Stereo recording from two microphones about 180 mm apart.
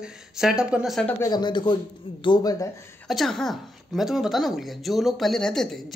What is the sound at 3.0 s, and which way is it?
A woman's voice, centre (ahead or behind).